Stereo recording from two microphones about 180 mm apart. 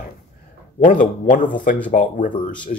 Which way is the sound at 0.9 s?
45° left (ahead or behind).